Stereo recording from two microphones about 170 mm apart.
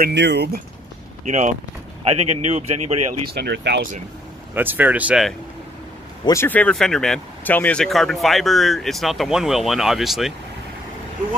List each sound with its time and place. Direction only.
0.0 s speech: 90° right
1.2 s speech: 45° right (ahead or behind)
3.3 s speech: 75° right (ahead or behind)
4.6 s speech: 10° right (ahead or behind)
6.2 s speech: 15° left (ahead or behind); by 10.3 s centre (ahead or behind)